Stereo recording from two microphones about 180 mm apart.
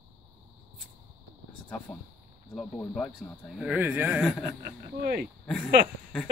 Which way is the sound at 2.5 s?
5° left (ahead or behind).